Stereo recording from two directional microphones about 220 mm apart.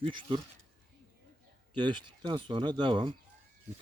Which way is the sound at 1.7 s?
20° right (ahead or behind).